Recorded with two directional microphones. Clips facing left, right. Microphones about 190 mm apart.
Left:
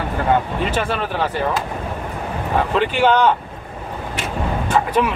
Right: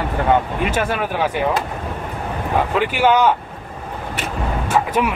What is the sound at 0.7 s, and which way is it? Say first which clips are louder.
Speech: right 2 dB; 10° right (ahead or behind).